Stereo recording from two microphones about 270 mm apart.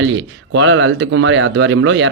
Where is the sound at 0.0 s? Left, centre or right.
Right.